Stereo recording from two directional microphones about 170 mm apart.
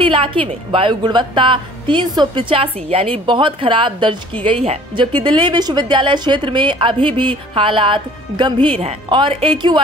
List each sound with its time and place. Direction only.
0.0 s a woman's voice: 30° right (ahead or behind)